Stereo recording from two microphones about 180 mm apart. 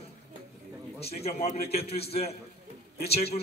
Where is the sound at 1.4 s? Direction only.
55° left (ahead or behind).